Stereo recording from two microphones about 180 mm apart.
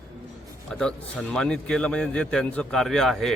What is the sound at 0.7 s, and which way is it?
A man's voice, 5° left (ahead or behind).